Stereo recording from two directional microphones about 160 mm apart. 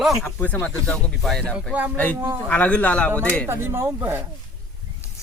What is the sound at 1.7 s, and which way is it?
Speech, 10° right (ahead or behind).